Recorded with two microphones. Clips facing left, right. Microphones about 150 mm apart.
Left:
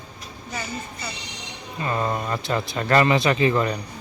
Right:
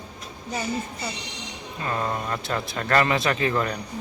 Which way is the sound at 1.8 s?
5° left (ahead or behind).